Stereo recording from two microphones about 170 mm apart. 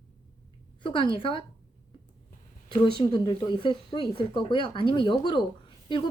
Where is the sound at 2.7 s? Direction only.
25° left (ahead or behind).